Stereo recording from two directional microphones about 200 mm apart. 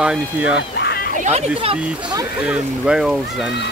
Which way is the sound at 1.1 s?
35° right (ahead or behind).